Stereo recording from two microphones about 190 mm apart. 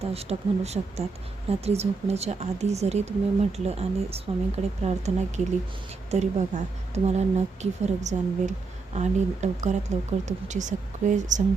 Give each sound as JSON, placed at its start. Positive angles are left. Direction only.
{"t": 0.0, "sound": "speech", "side_deg": -35}